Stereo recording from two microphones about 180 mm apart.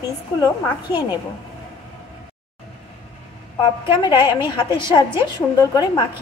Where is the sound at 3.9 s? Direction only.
25° left (ahead or behind).